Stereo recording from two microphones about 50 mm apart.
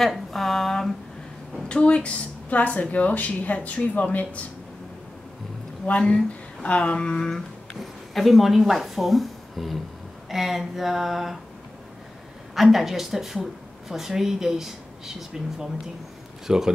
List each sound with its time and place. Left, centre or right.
0.3 s a sound: centre
1.7 s speech: left
5.9 s speech: left
7.2 s speech: centre
10.3 s a sound: centre
12.5 s speech: centre